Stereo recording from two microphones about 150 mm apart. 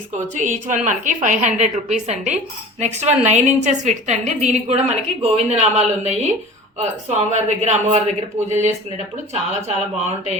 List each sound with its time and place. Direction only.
0.3 s a woman's voice: 55° right (ahead or behind)